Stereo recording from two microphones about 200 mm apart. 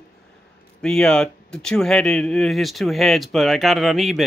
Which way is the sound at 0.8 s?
5° left (ahead or behind).